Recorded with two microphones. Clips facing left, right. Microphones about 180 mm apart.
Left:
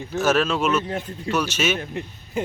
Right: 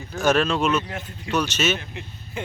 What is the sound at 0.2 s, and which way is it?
Speech, 5° left (ahead or behind).